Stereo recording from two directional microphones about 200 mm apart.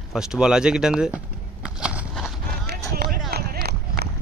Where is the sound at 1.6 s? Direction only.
5° right (ahead or behind).